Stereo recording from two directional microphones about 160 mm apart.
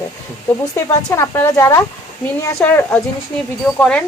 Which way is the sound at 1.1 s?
15° left (ahead or behind).